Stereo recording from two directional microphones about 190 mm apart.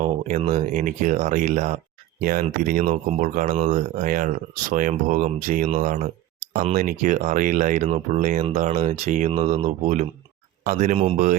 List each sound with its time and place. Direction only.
0.0 s speech: 35° right (ahead or behind)